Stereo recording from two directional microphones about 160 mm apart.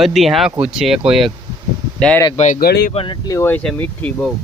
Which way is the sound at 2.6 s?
75° left (ahead or behind).